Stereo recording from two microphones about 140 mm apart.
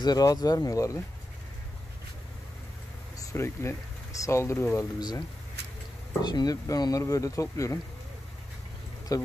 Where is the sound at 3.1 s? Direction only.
20° left (ahead or behind).